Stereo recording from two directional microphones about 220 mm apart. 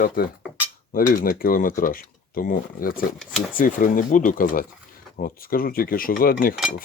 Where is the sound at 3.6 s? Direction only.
35° left (ahead or behind).